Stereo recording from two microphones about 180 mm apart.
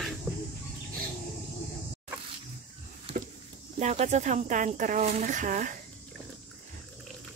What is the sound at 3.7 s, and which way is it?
Speech, 40° right (ahead or behind).